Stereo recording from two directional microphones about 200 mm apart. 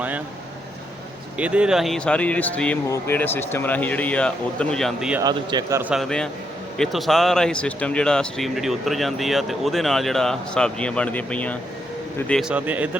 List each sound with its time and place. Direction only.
1.4 s speech: 5° right (ahead or behind)
5.2 s speech: 20° right (ahead or behind)
5.9 s speech: centre (ahead or behind)